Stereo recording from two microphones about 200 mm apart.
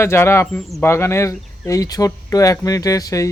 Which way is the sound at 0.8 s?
15° left (ahead or behind).